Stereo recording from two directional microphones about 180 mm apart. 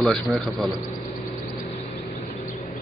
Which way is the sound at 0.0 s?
Centre (ahead or behind).